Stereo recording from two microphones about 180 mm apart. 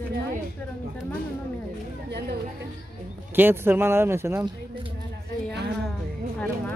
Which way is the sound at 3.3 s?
10° right (ahead or behind).